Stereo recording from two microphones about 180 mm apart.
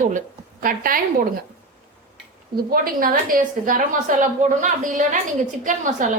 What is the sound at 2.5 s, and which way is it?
Speech, 55° right (ahead or behind).